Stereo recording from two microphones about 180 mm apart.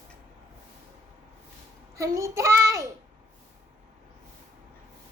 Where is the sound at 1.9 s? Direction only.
15° right (ahead or behind).